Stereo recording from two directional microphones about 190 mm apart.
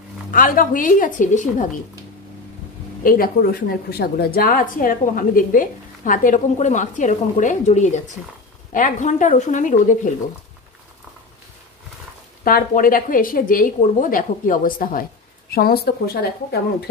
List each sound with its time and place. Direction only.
0.3 s a woman's voice: 45° left (ahead or behind)
3.0 s a woman's voice: 45° left (ahead or behind)
12.4 s a woman's voice: 50° left (ahead or behind)